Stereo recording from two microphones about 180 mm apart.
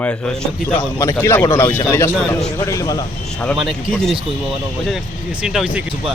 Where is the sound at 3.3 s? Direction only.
Centre (ahead or behind).